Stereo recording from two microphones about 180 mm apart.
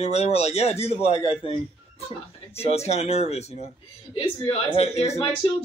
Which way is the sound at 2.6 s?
35° left (ahead or behind).